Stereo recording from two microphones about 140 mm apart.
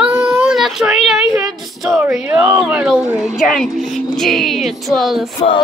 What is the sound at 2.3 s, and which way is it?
Speech, 25° right (ahead or behind).